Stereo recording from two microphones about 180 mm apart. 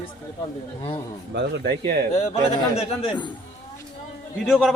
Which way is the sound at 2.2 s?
35° left (ahead or behind).